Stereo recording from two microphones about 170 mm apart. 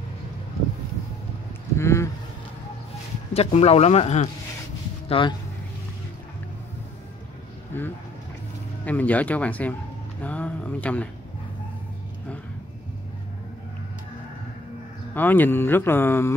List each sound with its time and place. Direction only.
1.8 s a sound: 15° left (ahead or behind)
3.3 s speech: 35° left (ahead or behind)
7.7 s speech: 10° left (ahead or behind)
15.1 s speech: 10° left (ahead or behind)